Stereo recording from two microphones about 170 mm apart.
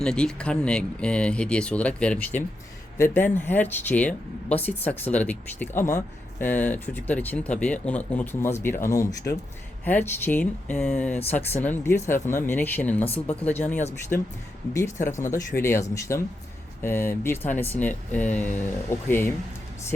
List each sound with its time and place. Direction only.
0.0 s speech: 5° left (ahead or behind)
14.1 s speech: 60° left (ahead or behind)
15.2 s speech: 15° left (ahead or behind)